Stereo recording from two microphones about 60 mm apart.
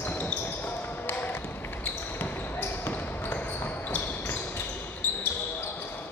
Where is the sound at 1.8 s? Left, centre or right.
Left.